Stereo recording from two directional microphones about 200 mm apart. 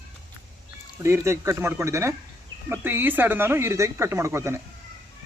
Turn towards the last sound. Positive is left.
turn(degrees=-15)  # may be behind; listen again after turning